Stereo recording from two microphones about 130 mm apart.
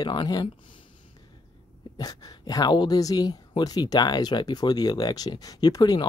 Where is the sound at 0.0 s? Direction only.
35° left (ahead or behind).